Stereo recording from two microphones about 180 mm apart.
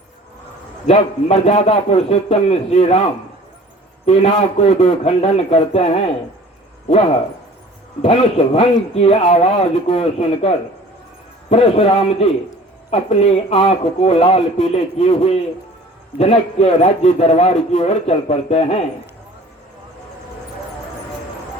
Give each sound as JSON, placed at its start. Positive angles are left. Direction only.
{"t": 0.9, "sound": "a man's voice", "side_deg": 35}
{"t": 4.0, "sound": "a man's voice", "side_deg": 35}
{"t": 8.0, "sound": "a man's voice", "side_deg": 35}